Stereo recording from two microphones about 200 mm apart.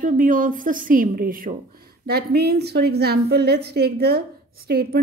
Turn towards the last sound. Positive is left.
turn(degrees=-50)  # may be behind; listen again after turning